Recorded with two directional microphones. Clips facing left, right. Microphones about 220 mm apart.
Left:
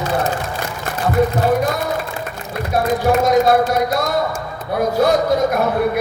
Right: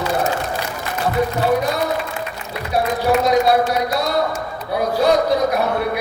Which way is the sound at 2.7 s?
50° left (ahead or behind).